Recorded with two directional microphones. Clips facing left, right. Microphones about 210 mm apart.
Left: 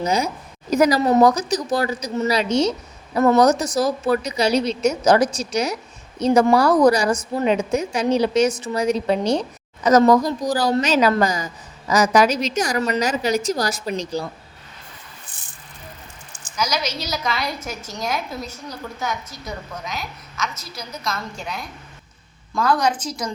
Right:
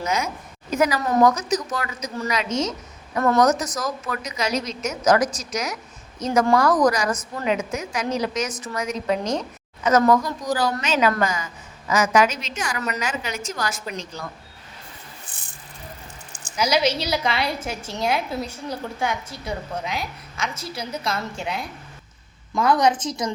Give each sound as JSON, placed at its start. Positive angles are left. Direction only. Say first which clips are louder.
{"t": 0.0, "sound": "a woman's voice", "louder": "left 4 dB", "side_deg": 35}
{"t": 16.6, "sound": "a woman's voice", "louder": "right 4 dB", "side_deg": -30}